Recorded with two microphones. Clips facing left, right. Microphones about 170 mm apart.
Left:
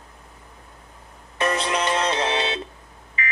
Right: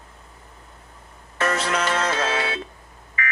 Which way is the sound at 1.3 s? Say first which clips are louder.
Even; 15° left (ahead or behind).